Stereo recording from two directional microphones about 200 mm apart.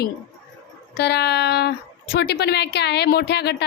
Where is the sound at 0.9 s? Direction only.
55° left (ahead or behind).